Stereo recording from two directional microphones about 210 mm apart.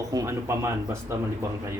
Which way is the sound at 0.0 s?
15° right (ahead or behind).